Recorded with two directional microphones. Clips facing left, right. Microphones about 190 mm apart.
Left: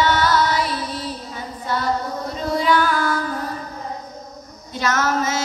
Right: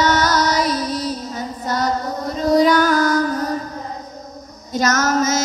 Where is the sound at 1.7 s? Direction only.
40° right (ahead or behind).